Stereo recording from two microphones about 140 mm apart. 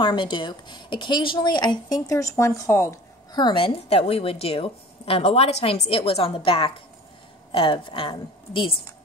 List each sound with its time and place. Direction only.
0.0 s speech: 35° left (ahead or behind)